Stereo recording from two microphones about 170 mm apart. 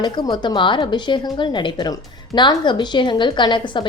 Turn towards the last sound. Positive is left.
turn(degrees=30)  # may be behind; listen again after turning